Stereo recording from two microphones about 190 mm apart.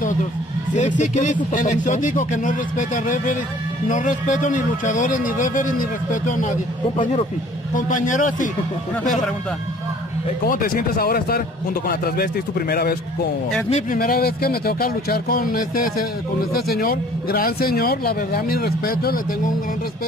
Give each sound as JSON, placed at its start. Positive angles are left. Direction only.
{"t": 0.7, "sound": "a man's voice", "side_deg": 40}
{"t": 7.7, "sound": "a man's voice", "side_deg": 45}
{"t": 10.4, "sound": "a man's voice", "side_deg": 50}
{"t": 13.9, "sound": "a man's voice", "side_deg": 50}